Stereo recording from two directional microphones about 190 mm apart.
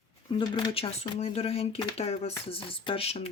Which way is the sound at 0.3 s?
25° left (ahead or behind).